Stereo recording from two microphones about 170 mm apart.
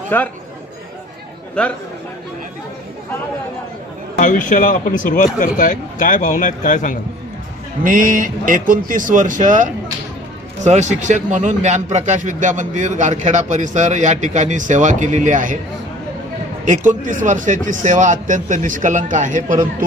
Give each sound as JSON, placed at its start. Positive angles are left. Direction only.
{"t": 0.1, "sound": "speech", "side_deg": 10}
{"t": 1.6, "sound": "speech", "side_deg": 5}
{"t": 4.2, "sound": "speech", "side_deg": 50}
{"t": 7.9, "sound": "speech", "side_deg": -50}
{"t": 16.6, "sound": "speech", "side_deg": -45}